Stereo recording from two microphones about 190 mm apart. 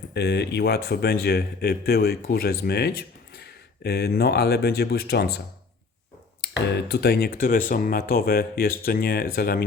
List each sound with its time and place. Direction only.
0.1 s speech: 60° left (ahead or behind)
6.4 s speech: 65° left (ahead or behind)